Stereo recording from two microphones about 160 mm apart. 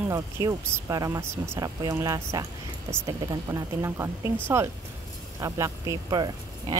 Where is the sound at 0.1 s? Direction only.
20° right (ahead or behind).